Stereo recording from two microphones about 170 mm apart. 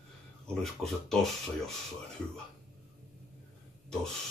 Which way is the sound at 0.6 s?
Centre (ahead or behind).